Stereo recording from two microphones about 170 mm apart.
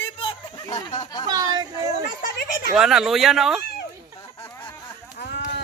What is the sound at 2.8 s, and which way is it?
Speech, centre (ahead or behind).